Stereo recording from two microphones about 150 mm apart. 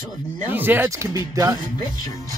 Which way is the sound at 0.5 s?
15° right (ahead or behind).